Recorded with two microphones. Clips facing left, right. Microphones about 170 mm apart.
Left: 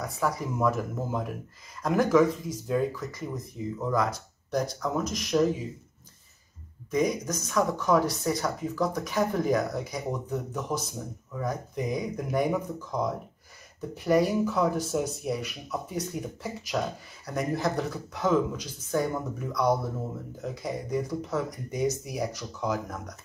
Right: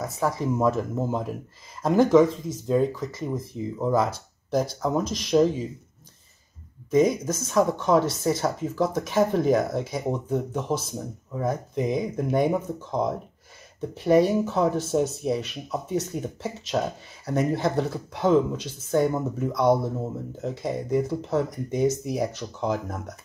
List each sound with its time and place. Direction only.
0.0 s speech: 25° right (ahead or behind)
6.9 s speech: 25° right (ahead or behind)